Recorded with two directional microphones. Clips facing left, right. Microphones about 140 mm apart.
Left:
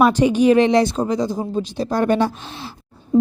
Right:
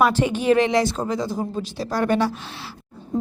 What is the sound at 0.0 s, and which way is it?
A woman's voice, 15° left (ahead or behind).